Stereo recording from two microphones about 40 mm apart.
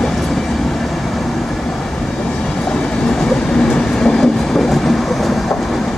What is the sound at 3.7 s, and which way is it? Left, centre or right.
Train, centre.